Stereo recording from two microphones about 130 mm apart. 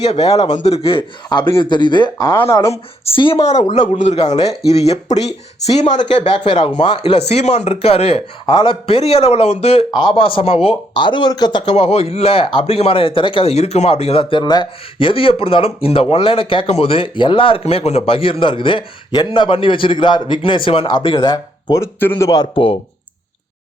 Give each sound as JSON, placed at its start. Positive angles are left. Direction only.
{"t": 0.0, "sound": "speech", "side_deg": 55}
{"t": 2.1, "sound": "speech", "side_deg": 20}
{"t": 3.0, "sound": "speech", "side_deg": 45}
{"t": 3.4, "sound": "speech", "side_deg": 60}
{"t": 6.2, "sound": "speech", "side_deg": 40}
{"t": 8.4, "sound": "speech", "side_deg": 35}
{"t": 9.9, "sound": "speech", "side_deg": 35}
{"t": 11.7, "sound": "speech", "side_deg": 50}
{"t": 22.0, "sound": "speech", "side_deg": 15}
{"t": 22.5, "sound": "speech", "side_deg": 45}